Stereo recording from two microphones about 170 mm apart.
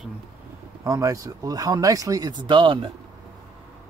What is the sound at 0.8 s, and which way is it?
Speech, 20° right (ahead or behind).